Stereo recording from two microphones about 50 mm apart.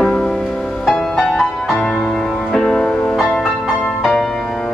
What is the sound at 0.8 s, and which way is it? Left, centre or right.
Music, centre.